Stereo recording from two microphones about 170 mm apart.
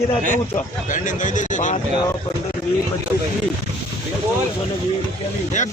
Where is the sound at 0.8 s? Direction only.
50° left (ahead or behind).